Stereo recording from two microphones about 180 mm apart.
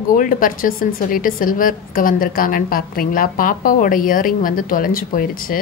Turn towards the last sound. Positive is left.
turn(degrees=50)  # may be behind; listen again after turning